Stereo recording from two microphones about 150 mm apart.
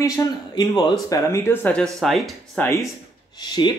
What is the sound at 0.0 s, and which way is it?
Speech, 25° left (ahead or behind).